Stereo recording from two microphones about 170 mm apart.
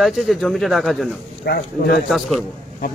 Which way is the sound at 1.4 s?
65° left (ahead or behind).